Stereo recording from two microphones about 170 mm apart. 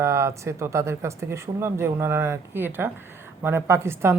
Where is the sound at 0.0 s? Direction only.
15° right (ahead or behind).